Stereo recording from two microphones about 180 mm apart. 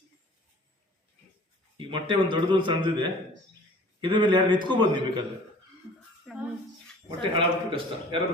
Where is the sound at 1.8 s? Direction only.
25° right (ahead or behind).